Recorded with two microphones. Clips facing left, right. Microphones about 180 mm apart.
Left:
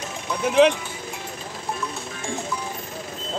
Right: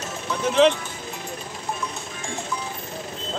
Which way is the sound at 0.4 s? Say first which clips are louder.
Left 1 dB; 10° left (ahead or behind).